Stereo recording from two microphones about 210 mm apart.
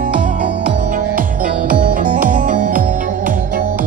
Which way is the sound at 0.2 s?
40° right (ahead or behind).